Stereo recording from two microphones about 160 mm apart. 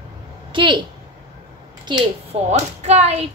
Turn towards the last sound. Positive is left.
turn(degrees=-45)  # may be behind; listen again after turning